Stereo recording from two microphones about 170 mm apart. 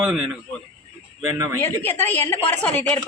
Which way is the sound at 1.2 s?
20° right (ahead or behind).